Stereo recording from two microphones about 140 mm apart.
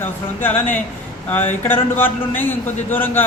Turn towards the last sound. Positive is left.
turn(degrees=15)  # may be behind; listen again after turning